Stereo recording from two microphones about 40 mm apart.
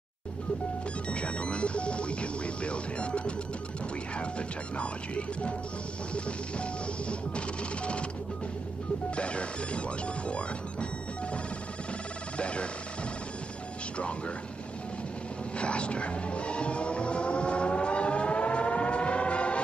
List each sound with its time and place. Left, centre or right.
1.1 s speech: left
9.1 s speech: left
12.4 s speech: left
15.5 s vehicle: left